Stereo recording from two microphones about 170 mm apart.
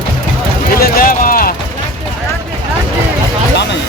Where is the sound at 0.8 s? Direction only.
55° left (ahead or behind).